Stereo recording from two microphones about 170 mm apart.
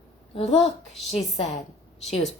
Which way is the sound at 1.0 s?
40° left (ahead or behind).